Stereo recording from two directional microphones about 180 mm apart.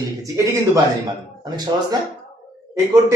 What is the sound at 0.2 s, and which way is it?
A man's voice, 15° right (ahead or behind).